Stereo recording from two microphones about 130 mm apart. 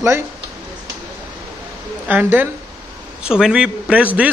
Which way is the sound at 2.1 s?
15° right (ahead or behind).